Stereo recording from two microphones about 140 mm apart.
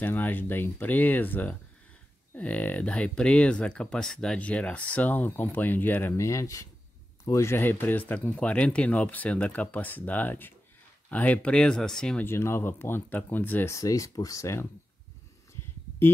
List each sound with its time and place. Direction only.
0.0 s speech: 15° left (ahead or behind)
12.3 s speech: 20° left (ahead or behind)